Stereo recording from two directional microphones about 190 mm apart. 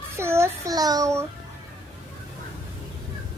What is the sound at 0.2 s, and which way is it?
Child singing, 15° right (ahead or behind).